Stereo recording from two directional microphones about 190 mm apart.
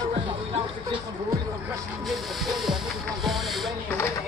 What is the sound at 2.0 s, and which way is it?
Music, centre (ahead or behind).